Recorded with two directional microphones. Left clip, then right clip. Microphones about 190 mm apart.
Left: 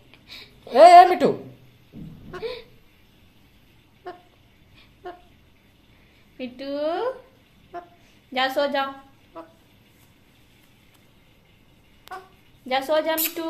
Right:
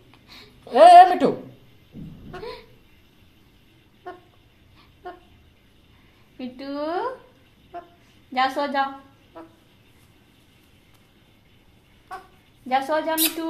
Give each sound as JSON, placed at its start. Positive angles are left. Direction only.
{"t": 0.7, "sound": "speech", "side_deg": 25}
{"t": 2.3, "sound": "a sound", "side_deg": 25}
{"t": 5.0, "sound": "dog", "side_deg": 15}
{"t": 6.3, "sound": "a sound", "side_deg": 15}
{"t": 8.3, "sound": "a woman's voice", "side_deg": 15}
{"t": 12.6, "sound": "speech", "side_deg": 20}